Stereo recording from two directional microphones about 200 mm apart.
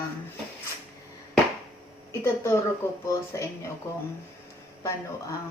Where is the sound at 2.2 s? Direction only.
15° left (ahead or behind).